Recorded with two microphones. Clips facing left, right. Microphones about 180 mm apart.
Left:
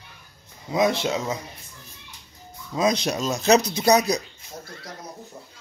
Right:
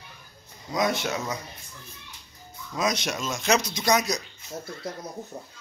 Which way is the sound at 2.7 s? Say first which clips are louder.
Left 5 dB; 30° left (ahead or behind).